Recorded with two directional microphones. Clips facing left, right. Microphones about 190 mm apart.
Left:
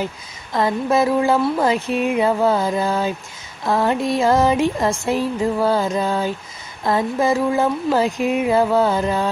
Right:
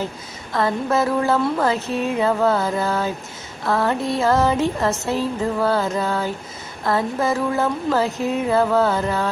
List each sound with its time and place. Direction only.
0.0 s a woman's voice: 15° left (ahead or behind)